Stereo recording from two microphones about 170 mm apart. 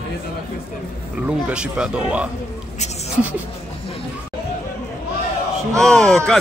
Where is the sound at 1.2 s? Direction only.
5° right (ahead or behind).